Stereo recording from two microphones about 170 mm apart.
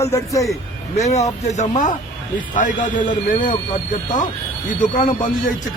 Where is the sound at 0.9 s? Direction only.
40° left (ahead or behind).